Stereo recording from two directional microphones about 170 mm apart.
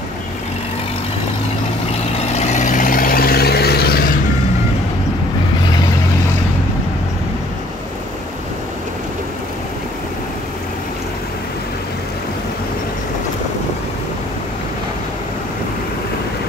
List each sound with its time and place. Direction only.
2.1 s vehicle: 40° left (ahead or behind); by 4.0 s 65° left (ahead or behind)